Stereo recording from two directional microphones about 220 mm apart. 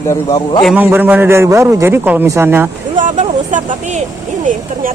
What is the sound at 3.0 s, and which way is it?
Speech, 35° right (ahead or behind).